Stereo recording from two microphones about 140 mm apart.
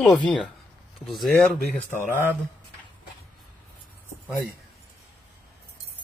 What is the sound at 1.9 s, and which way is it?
Speech, 70° left (ahead or behind).